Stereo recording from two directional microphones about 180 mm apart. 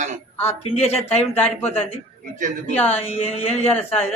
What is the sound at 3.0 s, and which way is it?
Speech, 35° left (ahead or behind).